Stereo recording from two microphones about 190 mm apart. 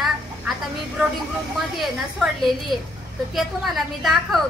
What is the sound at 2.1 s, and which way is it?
Child singing, centre (ahead or behind).